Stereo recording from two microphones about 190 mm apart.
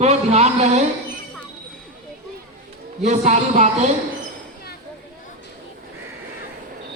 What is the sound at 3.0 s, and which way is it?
Speech, 40° right (ahead or behind).